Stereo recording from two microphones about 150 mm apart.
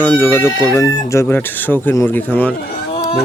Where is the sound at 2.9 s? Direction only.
40° left (ahead or behind).